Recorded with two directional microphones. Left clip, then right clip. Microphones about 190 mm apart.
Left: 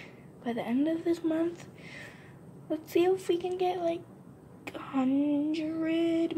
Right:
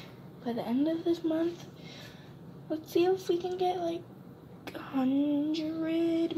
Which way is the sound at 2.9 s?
20° left (ahead or behind).